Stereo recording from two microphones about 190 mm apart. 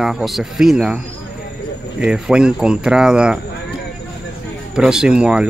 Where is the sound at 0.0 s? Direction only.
Centre (ahead or behind).